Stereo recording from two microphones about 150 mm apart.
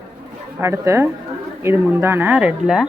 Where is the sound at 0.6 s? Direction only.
15° right (ahead or behind).